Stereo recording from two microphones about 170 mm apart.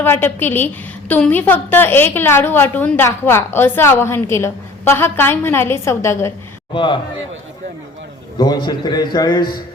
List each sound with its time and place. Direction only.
0.0 s a woman's voice: 10° left (ahead or behind)
6.7 s a man's voice: 30° left (ahead or behind)
8.4 s a man's voice: 25° left (ahead or behind)